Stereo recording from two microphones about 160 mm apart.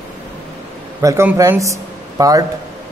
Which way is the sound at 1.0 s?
20° right (ahead or behind).